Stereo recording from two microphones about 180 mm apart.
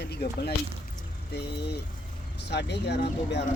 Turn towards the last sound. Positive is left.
turn(degrees=70)  # may be behind; listen again after turning